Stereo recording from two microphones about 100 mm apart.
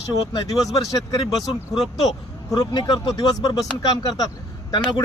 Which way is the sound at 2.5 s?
40° left (ahead or behind).